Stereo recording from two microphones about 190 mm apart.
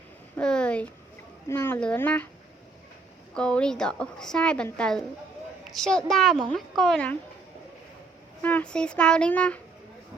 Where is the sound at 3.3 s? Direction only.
5° left (ahead or behind).